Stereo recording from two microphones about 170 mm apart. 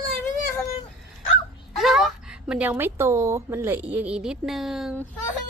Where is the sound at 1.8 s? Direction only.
Centre (ahead or behind).